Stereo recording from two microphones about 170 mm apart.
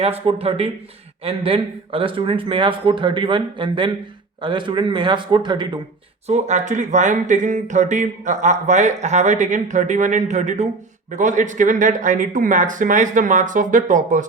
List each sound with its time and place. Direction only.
0.0 s a man's voice: 35° right (ahead or behind)
6.2 s speech: 40° right (ahead or behind)